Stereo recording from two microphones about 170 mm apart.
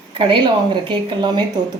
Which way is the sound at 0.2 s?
30° right (ahead or behind).